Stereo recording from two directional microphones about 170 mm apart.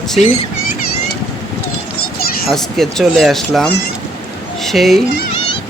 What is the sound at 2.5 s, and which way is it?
Speech, centre (ahead or behind).